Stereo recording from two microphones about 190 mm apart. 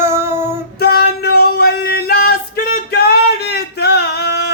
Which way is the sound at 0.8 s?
55° left (ahead or behind).